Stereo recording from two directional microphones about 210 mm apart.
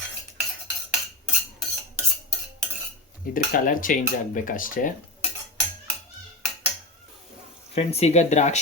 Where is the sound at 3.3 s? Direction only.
40° left (ahead or behind).